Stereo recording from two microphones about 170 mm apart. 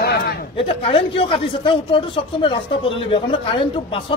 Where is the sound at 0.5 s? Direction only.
35° left (ahead or behind).